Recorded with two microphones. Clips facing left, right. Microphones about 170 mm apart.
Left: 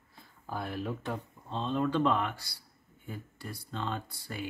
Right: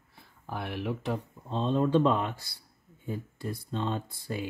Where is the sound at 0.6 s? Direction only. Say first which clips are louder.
Right 1 dB; 75° right (ahead or behind).